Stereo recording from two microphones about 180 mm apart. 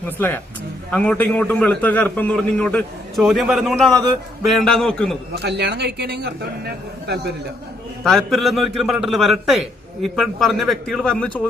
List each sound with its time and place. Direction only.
0.2 s a man's voice: 10° left (ahead or behind)
5.3 s a man's voice: 70° right (ahead or behind)
8.0 s a man's voice: centre (ahead or behind)